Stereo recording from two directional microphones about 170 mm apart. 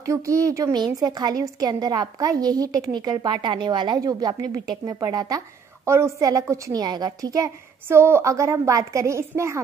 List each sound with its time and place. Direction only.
0.0 s a woman's voice: 20° right (ahead or behind)